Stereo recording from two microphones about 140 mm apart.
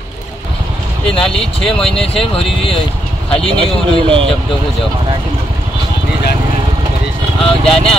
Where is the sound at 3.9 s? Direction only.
35° right (ahead or behind).